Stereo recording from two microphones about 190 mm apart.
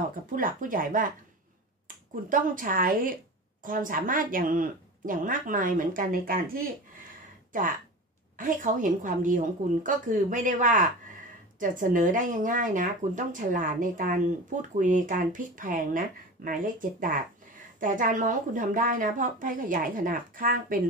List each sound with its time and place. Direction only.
0.3 s speech: 45° right (ahead or behind)